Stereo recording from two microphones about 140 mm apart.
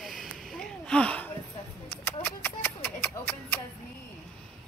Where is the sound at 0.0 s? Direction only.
Centre (ahead or behind).